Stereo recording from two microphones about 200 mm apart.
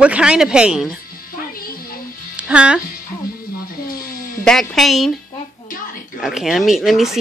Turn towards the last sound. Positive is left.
turn(degrees=0)  # may be behind; listen again after turning